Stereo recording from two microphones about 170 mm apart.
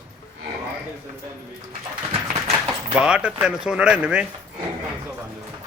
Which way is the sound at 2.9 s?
5° right (ahead or behind).